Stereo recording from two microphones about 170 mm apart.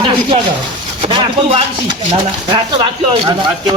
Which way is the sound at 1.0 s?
30° right (ahead or behind).